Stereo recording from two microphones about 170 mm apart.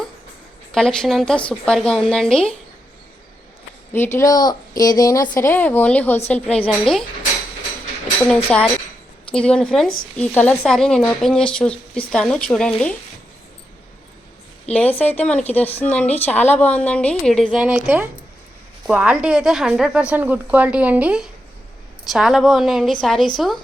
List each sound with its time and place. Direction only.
0.7 s a woman's voice: 5° left (ahead or behind)
3.9 s a woman's voice: 15° left (ahead or behind)
8.5 s a woman's voice: 5° left (ahead or behind)
14.7 s a woman's voice: 10° left (ahead or behind)